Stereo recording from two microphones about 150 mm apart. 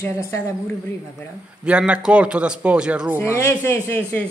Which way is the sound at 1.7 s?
5° right (ahead or behind).